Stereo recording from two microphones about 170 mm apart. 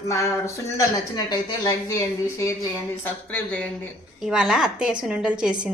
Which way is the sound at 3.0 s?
5° left (ahead or behind).